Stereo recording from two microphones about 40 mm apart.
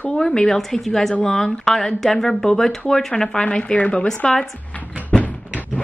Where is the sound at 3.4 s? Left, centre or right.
Left.